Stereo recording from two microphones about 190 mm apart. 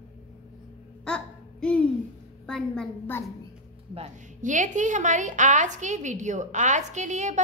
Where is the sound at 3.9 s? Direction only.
40° right (ahead or behind).